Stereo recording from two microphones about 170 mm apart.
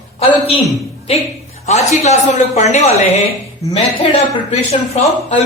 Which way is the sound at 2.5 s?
40° left (ahead or behind).